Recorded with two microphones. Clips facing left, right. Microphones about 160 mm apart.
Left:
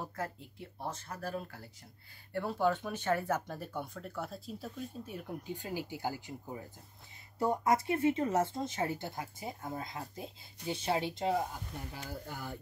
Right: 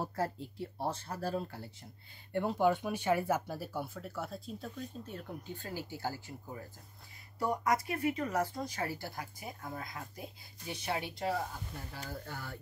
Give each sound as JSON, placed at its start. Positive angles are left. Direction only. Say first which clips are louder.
{"t": 0.0, "sound": "speech", "louder": "right 4 dB", "side_deg": -35}
{"t": 2.3, "sound": "speech", "louder": "right 2 dB", "side_deg": -15}